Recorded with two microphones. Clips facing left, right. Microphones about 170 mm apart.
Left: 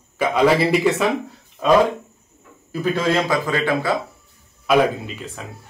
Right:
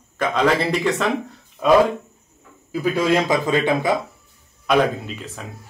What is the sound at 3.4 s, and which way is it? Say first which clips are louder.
Speech: right 2 dB; 20° right (ahead or behind).